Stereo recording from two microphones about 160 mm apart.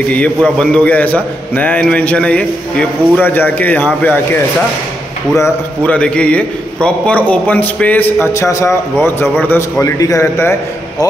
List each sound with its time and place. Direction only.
0.1 s a man's voice: 5° left (ahead or behind)
5.4 s a man's voice: 10° left (ahead or behind)